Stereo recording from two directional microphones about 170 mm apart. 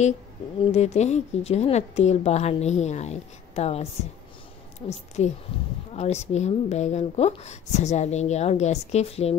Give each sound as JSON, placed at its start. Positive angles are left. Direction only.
{"t": 0.7, "sound": "speech", "side_deg": 40}
{"t": 5.5, "sound": "speech", "side_deg": 30}